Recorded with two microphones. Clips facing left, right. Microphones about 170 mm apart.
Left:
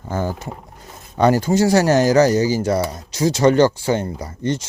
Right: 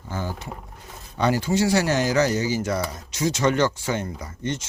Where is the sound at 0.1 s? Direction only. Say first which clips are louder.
Left 7 dB; 45° left (ahead or behind).